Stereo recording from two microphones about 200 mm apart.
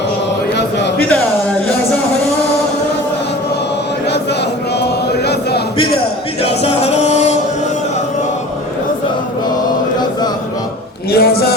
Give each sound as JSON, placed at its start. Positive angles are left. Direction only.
{"t": 4.8, "sound": "chant", "side_deg": 55}
{"t": 6.4, "sound": "music", "side_deg": 30}
{"t": 11.1, "sound": "a sound", "side_deg": 50}